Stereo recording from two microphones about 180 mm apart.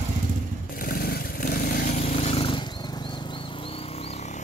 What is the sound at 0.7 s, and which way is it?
Motorcycle, 50° left (ahead or behind).